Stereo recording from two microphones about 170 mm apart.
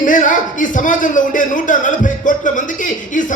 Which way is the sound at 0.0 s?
50° left (ahead or behind).